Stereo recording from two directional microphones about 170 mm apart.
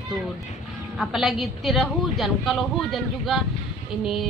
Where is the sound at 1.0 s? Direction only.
Centre (ahead or behind).